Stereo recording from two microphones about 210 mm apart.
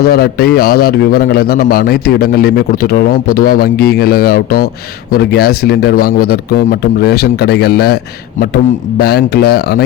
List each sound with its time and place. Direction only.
0.1 s a man's voice: 45° left (ahead or behind)